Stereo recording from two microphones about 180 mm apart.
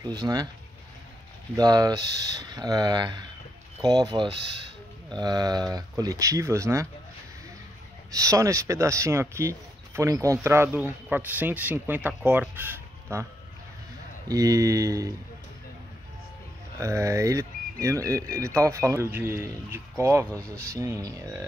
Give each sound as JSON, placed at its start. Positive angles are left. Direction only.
{"t": 0.0, "sound": "speech", "side_deg": -25}
{"t": 1.6, "sound": "speech", "side_deg": -20}
{"t": 4.3, "sound": "speech", "side_deg": -75}
{"t": 5.1, "sound": "speech", "side_deg": -20}
{"t": 8.1, "sound": "speech", "side_deg": -15}
{"t": 16.8, "sound": "speech", "side_deg": -15}